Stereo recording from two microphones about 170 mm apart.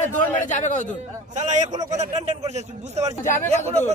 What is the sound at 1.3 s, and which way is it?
A man's voice, 45° right (ahead or behind).